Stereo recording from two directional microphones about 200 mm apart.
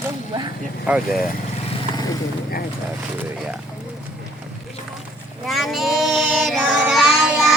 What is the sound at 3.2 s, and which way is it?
Speech, 5° right (ahead or behind).